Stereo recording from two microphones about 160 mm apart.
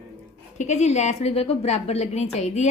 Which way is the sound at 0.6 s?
45° left (ahead or behind).